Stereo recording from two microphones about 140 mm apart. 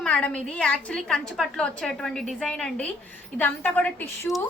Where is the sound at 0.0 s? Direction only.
10° left (ahead or behind).